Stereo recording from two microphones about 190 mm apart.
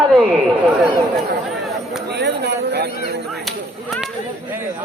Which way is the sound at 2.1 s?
60° right (ahead or behind).